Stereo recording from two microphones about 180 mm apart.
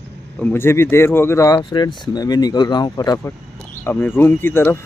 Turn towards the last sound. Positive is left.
turn(degrees=10)  # may be behind; listen again after turning